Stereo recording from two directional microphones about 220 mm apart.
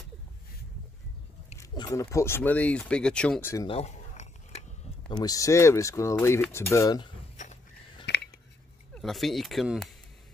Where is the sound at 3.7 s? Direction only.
30° left (ahead or behind).